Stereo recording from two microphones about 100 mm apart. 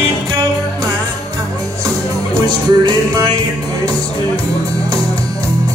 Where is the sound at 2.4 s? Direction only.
40° right (ahead or behind).